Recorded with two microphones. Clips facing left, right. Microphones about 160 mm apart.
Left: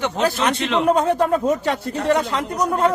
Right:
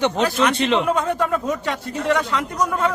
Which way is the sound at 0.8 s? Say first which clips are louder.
Left 4 dB; 35° left (ahead or behind).